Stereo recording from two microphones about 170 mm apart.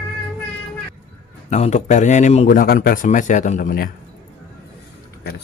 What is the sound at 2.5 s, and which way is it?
A man's voice, 55° left (ahead or behind).